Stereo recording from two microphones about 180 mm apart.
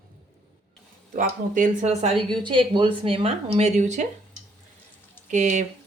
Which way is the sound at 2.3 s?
25° right (ahead or behind).